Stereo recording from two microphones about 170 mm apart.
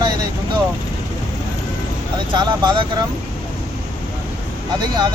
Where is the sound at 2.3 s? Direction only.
25° right (ahead or behind).